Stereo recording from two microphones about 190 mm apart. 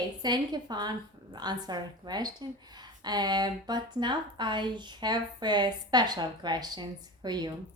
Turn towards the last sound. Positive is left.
turn(degrees=-20)  # may be behind; listen again after turning